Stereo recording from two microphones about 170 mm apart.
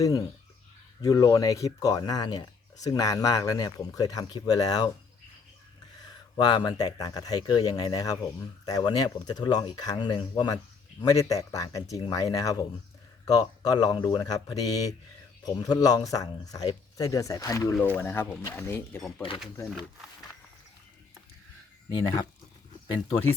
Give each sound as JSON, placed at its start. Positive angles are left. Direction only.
{"t": 0.0, "sound": "speech", "side_deg": 20}
{"t": 6.3, "sound": "speech", "side_deg": 25}
{"t": 21.8, "sound": "speech", "side_deg": 25}